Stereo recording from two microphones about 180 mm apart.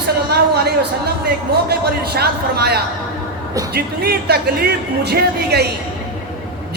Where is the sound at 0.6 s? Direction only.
60° right (ahead or behind).